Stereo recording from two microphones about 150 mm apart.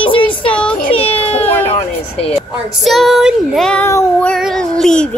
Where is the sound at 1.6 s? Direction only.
45° left (ahead or behind).